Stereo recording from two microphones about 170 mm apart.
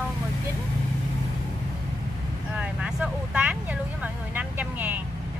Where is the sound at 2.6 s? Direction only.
5° right (ahead or behind).